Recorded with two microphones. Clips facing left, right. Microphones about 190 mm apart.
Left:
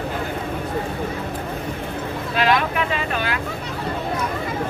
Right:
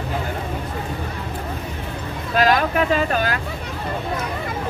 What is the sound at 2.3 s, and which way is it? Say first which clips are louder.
Vehicle: right 3 dB; 40° right (ahead or behind).